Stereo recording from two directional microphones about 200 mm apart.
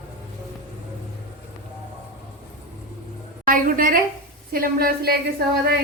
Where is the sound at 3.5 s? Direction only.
45° right (ahead or behind).